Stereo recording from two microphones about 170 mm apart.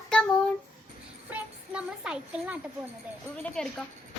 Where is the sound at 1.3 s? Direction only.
5° right (ahead or behind).